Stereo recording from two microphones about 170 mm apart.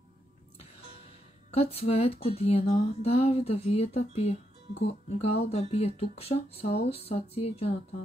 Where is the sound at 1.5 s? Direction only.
35° left (ahead or behind).